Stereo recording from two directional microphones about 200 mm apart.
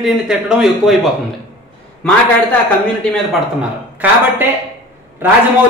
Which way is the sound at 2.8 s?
5° left (ahead or behind).